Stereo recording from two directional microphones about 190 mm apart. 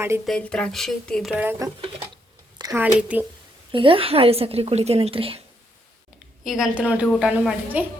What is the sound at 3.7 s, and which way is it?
A woman's voice, 25° right (ahead or behind).